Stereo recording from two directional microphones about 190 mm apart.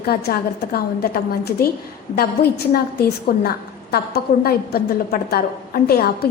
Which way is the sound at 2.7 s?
55° left (ahead or behind).